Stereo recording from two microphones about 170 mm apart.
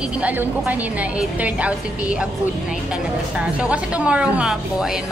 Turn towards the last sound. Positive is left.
turn(degrees=-5)  # may be behind; listen again after turning